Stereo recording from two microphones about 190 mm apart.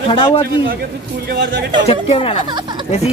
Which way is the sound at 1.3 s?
65° right (ahead or behind).